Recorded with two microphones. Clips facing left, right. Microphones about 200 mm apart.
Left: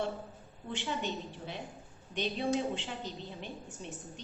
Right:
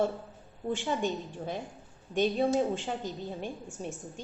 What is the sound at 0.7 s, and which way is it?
A woman's voice, 45° right (ahead or behind).